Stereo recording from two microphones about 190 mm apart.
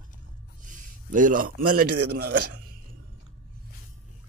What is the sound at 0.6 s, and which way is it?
A man's voice, 45° right (ahead or behind).